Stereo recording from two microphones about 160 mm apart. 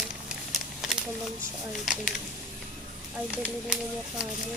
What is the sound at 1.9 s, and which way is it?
Speech, 5° right (ahead or behind).